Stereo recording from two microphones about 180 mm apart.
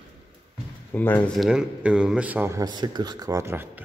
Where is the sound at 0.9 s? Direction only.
10° left (ahead or behind).